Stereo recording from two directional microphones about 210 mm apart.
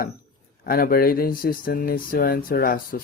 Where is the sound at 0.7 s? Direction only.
45° left (ahead or behind).